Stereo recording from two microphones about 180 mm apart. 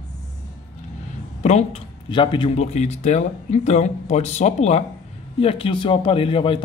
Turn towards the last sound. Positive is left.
turn(degrees=30)  # may be behind; listen again after turning